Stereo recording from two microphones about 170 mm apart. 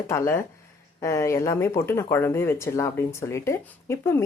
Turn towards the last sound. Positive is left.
turn(degrees=15)  # may be behind; listen again after turning